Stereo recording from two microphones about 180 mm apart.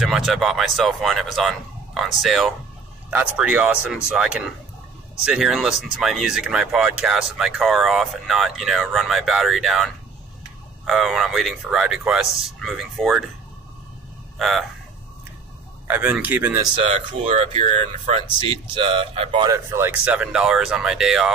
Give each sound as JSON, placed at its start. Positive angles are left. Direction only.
{"t": 0.0, "sound": "speech", "side_deg": 0}
{"t": 10.9, "sound": "speech", "side_deg": 0}
{"t": 15.9, "sound": "speech", "side_deg": -10}
{"t": 16.7, "sound": "speech", "side_deg": -35}
{"t": 19.7, "sound": "speech", "side_deg": -10}